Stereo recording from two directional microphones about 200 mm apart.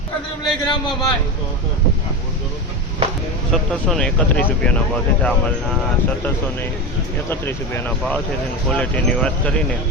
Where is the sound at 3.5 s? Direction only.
5° left (ahead or behind).